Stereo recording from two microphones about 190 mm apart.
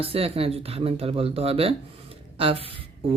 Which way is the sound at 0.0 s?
30° right (ahead or behind).